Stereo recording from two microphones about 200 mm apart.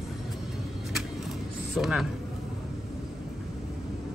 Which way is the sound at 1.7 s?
Centre (ahead or behind).